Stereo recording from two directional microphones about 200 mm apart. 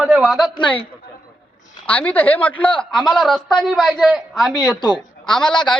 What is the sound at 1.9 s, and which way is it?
A woman's voice, 5° left (ahead or behind).